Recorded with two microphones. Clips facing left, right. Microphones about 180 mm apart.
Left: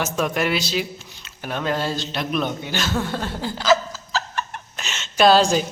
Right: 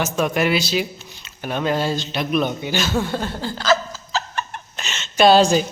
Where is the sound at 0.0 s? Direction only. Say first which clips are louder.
Right 2 dB; centre (ahead or behind).